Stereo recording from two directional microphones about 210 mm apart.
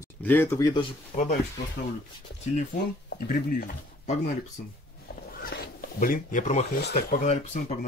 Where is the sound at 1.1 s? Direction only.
35° left (ahead or behind).